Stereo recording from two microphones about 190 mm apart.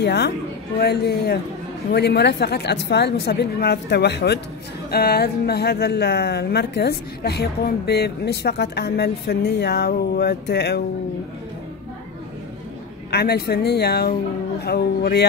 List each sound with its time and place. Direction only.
0.0 s a woman's voice: 60° left (ahead or behind)
13.1 s speech: 60° left (ahead or behind)